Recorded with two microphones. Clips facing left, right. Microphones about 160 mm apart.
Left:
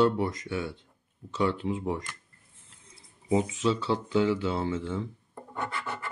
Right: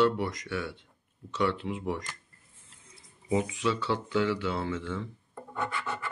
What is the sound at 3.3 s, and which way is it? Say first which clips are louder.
Speech: left 2 dB; 30° left (ahead or behind).